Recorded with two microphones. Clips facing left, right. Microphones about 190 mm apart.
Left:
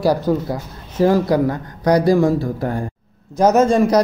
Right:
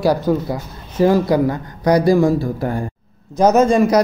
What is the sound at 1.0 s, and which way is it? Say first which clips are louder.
A man's voice: right 1 dB; 10° right (ahead or behind).